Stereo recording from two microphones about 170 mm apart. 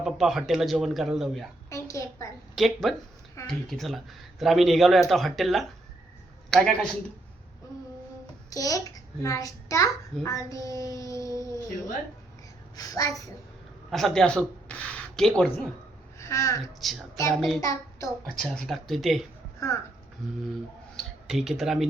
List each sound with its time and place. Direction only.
0.0 s speech: centre (ahead or behind)
1.7 s a sound: 20° left (ahead or behind)
2.6 s speech: centre (ahead or behind)
8.4 s a child's voice: 20° left (ahead or behind)
12.7 s a child's voice: 20° left (ahead or behind)
13.9 s speech: centre (ahead or behind)
16.1 s speech: 15° left (ahead or behind)
16.8 s speech: centre (ahead or behind)
17.6 s child singing: 20° left (ahead or behind)
18.3 s speech: 5° left (ahead or behind)
19.5 s speech: 15° left (ahead or behind)
20.9 s a sound: centre (ahead or behind)